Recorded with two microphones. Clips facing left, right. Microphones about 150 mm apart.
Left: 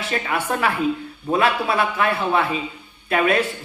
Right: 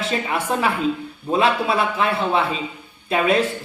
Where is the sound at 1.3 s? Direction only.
25° right (ahead or behind).